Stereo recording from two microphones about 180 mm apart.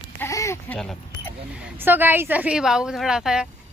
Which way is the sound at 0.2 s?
15° left (ahead or behind).